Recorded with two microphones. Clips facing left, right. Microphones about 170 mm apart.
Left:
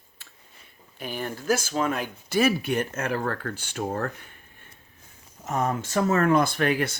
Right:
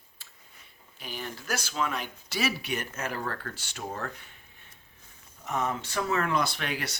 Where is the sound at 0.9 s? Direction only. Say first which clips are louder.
Left 7 dB; 50° left (ahead or behind).